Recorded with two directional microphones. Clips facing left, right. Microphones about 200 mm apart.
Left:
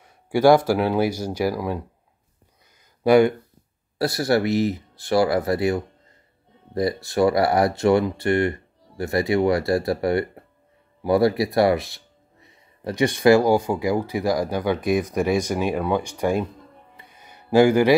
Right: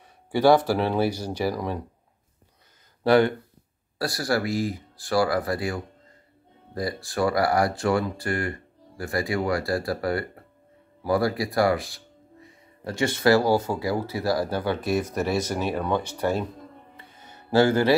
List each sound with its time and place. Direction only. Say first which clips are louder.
0.3 s speech: left 3 dB; 10° left (ahead or behind)
3.0 s speech: left 4 dB; 10° left (ahead or behind)
4.0 s speech: left 5 dB; 20° left (ahead or behind)
16.9 s music: right 1 dB; 15° left (ahead or behind)